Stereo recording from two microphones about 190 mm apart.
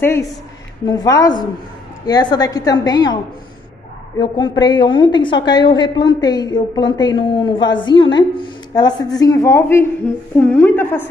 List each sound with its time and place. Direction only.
0.0 s a woman's voice: 15° left (ahead or behind)
4.2 s a woman's voice: 20° left (ahead or behind)